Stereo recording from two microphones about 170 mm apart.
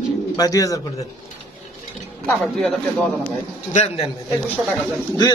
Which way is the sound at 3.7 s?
40° left (ahead or behind).